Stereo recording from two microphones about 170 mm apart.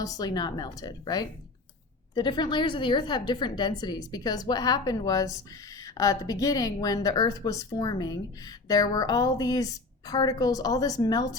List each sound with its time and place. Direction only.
0.0 s a woman's voice: 20° left (ahead or behind)